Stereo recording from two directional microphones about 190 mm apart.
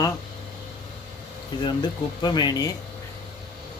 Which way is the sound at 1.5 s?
20° left (ahead or behind).